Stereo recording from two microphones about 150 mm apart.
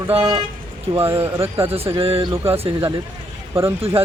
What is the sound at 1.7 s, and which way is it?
Speech, 40° right (ahead or behind).